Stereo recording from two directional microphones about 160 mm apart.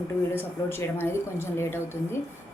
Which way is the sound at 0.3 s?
15° left (ahead or behind).